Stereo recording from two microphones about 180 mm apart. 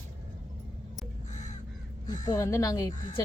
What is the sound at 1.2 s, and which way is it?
Crow, 40° left (ahead or behind).